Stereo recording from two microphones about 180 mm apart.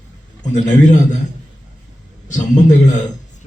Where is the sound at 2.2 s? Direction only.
40° left (ahead or behind).